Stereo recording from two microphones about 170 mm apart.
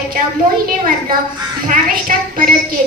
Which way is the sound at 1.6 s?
55° right (ahead or behind).